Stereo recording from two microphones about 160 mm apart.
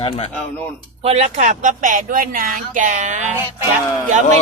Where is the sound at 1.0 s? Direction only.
40° right (ahead or behind).